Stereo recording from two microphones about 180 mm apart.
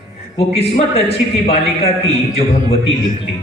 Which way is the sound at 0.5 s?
35° left (ahead or behind).